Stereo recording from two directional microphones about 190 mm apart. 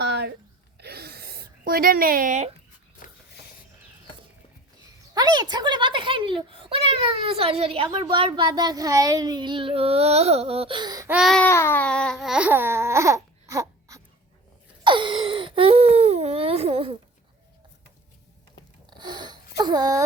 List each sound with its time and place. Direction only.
0.0 s a sound: 60° right (ahead or behind); by 2.5 s 40° right (ahead or behind)
5.1 s a child's voice: 20° right (ahead or behind)
11.1 s baby cry: centre (ahead or behind)
11.4 s baby cry: 10° left (ahead or behind); by 14.0 s 15° right (ahead or behind)
14.8 s wail: 25° right (ahead or behind)
18.9 s a sound: 25° right (ahead or behind)